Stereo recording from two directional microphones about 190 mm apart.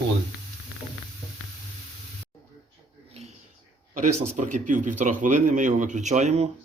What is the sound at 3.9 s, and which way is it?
Speech, 40° right (ahead or behind).